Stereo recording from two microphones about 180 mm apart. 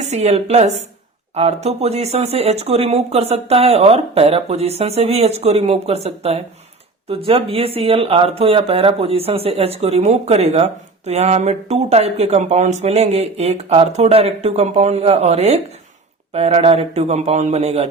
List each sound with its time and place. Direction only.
0.0 s speech: 35° right (ahead or behind)